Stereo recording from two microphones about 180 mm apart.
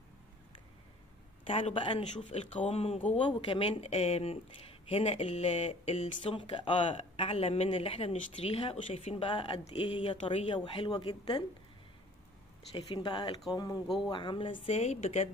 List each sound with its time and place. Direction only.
1.4 s speech: 30° left (ahead or behind)
12.7 s speech: 25° left (ahead or behind)
13.8 s speech: centre (ahead or behind)
14.1 s speech: 25° left (ahead or behind)